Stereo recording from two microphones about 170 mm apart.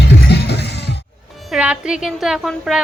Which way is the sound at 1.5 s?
5° right (ahead or behind).